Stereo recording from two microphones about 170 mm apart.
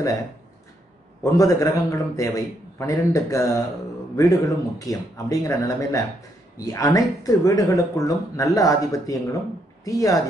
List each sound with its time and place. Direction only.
1.2 s speech: 20° left (ahead or behind)